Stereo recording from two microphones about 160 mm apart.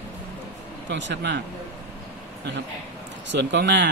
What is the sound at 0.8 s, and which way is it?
Speech, 90° right.